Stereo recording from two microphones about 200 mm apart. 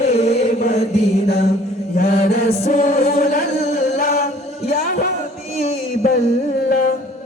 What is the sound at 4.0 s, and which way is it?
Chant, 45° left (ahead or behind).